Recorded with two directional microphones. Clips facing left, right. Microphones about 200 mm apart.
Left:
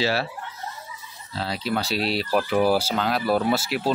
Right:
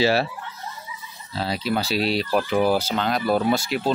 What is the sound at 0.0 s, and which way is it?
Speech, 20° right (ahead or behind).